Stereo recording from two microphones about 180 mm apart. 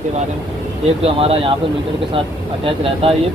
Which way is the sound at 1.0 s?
30° right (ahead or behind).